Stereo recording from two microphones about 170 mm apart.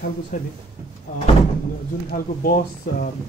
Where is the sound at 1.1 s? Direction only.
50° left (ahead or behind).